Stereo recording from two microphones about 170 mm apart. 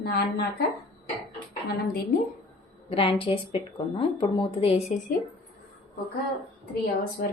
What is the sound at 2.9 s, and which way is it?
Speech, 30° left (ahead or behind).